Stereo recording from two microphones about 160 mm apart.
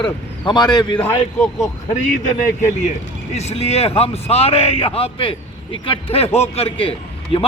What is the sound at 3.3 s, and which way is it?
A man's voice, 40° left (ahead or behind).